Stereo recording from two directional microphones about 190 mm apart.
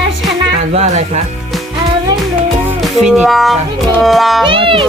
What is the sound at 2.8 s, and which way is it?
Music, centre (ahead or behind).